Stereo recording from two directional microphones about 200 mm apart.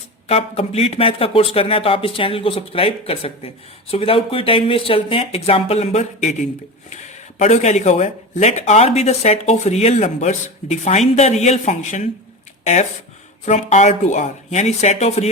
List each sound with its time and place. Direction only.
0.3 s speech: 30° left (ahead or behind)